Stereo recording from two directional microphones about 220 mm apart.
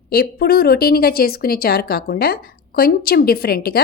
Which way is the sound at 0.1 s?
45° left (ahead or behind).